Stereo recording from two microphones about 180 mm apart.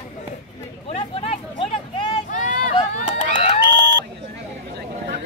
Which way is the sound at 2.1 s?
45° left (ahead or behind).